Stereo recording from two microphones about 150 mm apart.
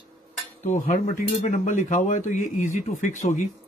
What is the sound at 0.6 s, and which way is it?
A man's voice, 65° left (ahead or behind).